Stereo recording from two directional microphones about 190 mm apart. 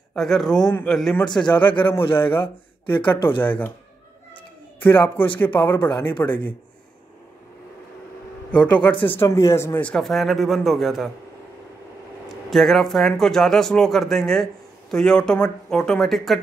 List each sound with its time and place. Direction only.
0.1 s a man's voice: centre (ahead or behind)
3.0 s speech: 25° left (ahead or behind)
3.4 s speech: 10° left (ahead or behind)
4.8 s speech: 10° left (ahead or behind)
8.5 s speech: 5° left (ahead or behind)
12.4 s speech: centre (ahead or behind)